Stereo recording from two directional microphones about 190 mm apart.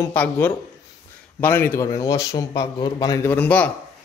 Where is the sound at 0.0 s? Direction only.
10° left (ahead or behind).